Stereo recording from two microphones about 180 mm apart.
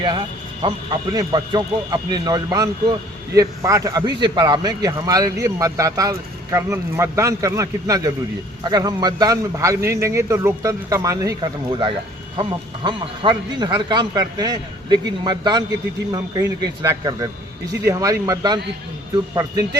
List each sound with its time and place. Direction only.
0.0 s a man's voice: 25° right (ahead or behind)